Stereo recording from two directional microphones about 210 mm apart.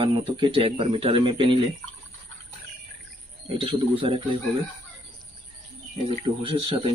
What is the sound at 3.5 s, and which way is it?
Speech, 25° right (ahead or behind).